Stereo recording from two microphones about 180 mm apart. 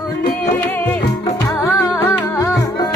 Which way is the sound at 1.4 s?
10° left (ahead or behind).